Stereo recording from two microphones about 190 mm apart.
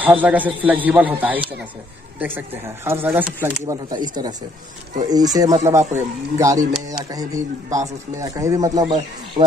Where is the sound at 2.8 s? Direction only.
15° right (ahead or behind).